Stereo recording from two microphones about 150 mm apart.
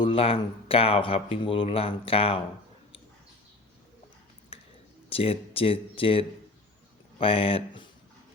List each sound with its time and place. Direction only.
0.0 s speech: 40° left (ahead or behind)
5.0 s speech: 40° left (ahead or behind)